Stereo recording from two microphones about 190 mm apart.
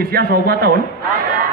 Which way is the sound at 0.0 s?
55° right (ahead or behind).